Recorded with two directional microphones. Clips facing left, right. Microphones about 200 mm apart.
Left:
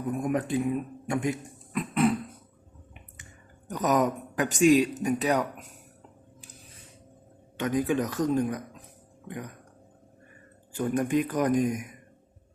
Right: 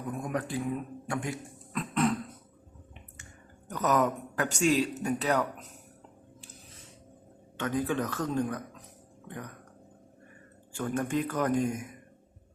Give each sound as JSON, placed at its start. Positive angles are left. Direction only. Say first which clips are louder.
{"t": 0.2, "sound": "speech", "louder": "left 6 dB", "side_deg": 20}
{"t": 1.7, "sound": "cough", "louder": "left 3 dB", "side_deg": 10}
{"t": 3.7, "sound": "speech", "louder": "left 2 dB", "side_deg": 15}
{"t": 7.6, "sound": "speech", "louder": "left 4 dB", "side_deg": 15}
{"t": 10.8, "sound": "speech", "louder": "left 4 dB", "side_deg": 15}